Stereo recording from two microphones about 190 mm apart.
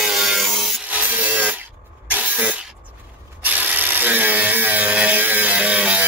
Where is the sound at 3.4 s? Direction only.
10° right (ahead or behind).